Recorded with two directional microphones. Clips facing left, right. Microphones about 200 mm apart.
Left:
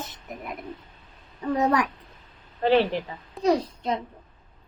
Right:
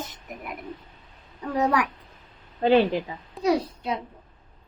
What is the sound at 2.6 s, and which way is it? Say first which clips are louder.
A woman's voice: right 2 dB; 15° right (ahead or behind).